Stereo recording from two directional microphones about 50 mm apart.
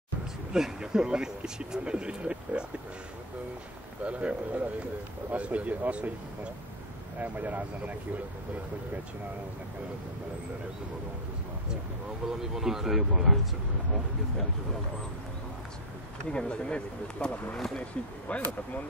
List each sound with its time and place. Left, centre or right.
0.5 s speech: centre
4.0 s speech: right
7.2 s speech: right
12.3 s speech: centre
16.3 s speech: centre